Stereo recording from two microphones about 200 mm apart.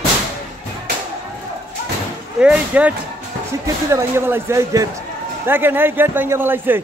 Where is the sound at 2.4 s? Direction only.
5° right (ahead or behind).